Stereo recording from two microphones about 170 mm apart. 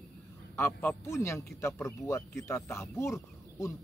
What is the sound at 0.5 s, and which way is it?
Speech, 15° left (ahead or behind).